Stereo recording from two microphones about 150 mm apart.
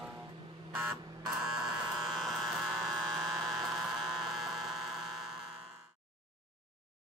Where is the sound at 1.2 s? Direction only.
5° right (ahead or behind).